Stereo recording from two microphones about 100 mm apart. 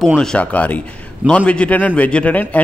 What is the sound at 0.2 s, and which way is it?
A man's voice, 10° left (ahead or behind).